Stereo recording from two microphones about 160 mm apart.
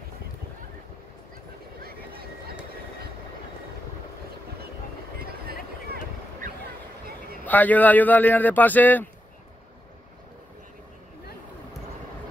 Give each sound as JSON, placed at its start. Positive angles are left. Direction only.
{"t": 1.8, "sound": "vehicle", "side_deg": -70}
{"t": 5.2, "sound": "vehicle", "side_deg": -75}
{"t": 7.4, "sound": "speech", "side_deg": 10}